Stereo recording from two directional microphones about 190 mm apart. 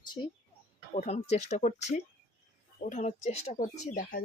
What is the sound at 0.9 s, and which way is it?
Speech, 35° left (ahead or behind).